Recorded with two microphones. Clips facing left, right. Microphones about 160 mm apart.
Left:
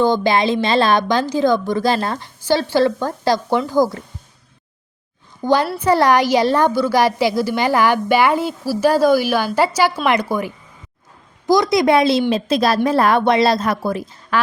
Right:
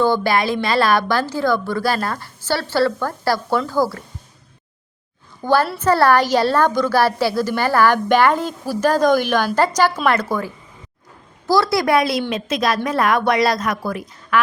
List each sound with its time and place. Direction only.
0.0 s a woman's voice: 20° left (ahead or behind)
5.4 s a woman's voice: 15° left (ahead or behind)